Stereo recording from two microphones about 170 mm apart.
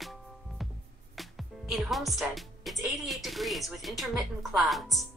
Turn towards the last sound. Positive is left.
turn(degrees=0)  # may be behind; listen again after turning